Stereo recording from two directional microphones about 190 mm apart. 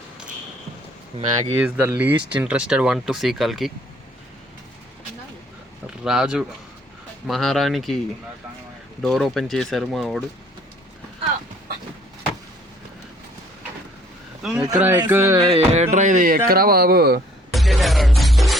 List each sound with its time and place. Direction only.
1.6 s speech: 10° right (ahead or behind)
6.1 s speech: 5° right (ahead or behind)
9.0 s speech: centre (ahead or behind)
14.4 s speech: 5° right (ahead or behind)
15.4 s speech: 30° right (ahead or behind); by 17.2 s 55° right (ahead or behind)
17.5 s music: centre (ahead or behind)